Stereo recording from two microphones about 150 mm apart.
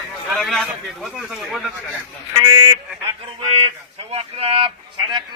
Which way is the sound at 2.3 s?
25° right (ahead or behind).